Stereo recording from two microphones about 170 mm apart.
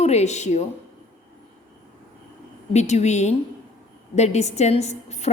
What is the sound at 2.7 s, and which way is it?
A woman's voice, 40° left (ahead or behind).